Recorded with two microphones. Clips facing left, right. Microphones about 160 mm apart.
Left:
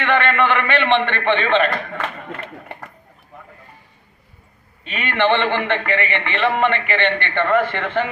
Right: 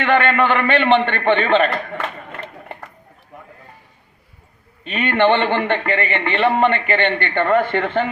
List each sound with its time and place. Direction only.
0.0 s a man's voice: 35° right (ahead or behind)
4.9 s a man's voice: 35° right (ahead or behind)